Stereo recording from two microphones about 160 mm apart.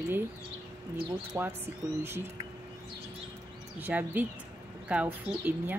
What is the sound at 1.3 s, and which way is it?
Speech, 20° right (ahead or behind).